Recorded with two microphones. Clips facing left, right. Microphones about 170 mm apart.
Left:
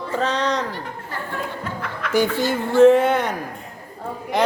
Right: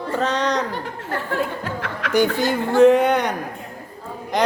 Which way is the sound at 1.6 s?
80° right.